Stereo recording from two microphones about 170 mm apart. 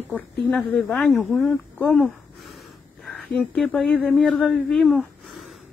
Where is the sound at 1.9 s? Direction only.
Centre (ahead or behind).